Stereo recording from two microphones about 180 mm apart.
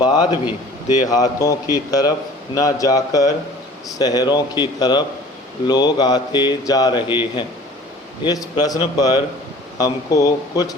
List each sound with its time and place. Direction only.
0.0 s speech: 25° left (ahead or behind)